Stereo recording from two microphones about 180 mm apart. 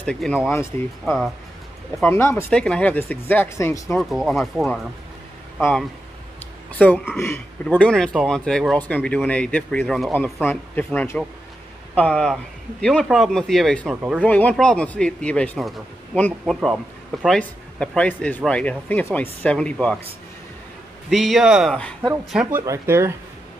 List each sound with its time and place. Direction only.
0.0 s speech: 5° left (ahead or behind)
2.0 s speech: 15° left (ahead or behind)
3.9 s speech: centre (ahead or behind)
7.6 s speech: 5° left (ahead or behind)
16.6 s speech: centre (ahead or behind)
21.1 s speech: centre (ahead or behind)
22.7 s speech: 15° right (ahead or behind)